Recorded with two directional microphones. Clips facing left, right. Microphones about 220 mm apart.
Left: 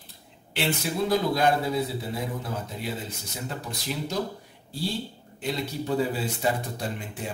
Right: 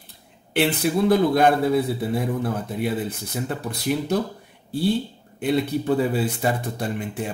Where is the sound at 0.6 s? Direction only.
55° right (ahead or behind).